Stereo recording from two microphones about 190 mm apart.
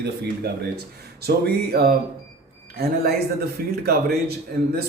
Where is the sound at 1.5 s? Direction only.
55° right (ahead or behind).